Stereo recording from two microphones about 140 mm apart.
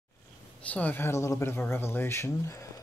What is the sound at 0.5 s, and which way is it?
Speech, 10° left (ahead or behind).